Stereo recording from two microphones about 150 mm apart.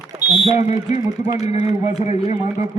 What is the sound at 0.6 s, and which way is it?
A man's voice, 50° left (ahead or behind).